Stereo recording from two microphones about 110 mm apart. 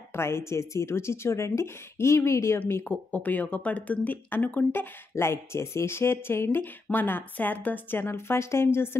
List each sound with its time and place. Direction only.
0.1 s speech: 25° left (ahead or behind)
5.1 s speech: 25° left (ahead or behind)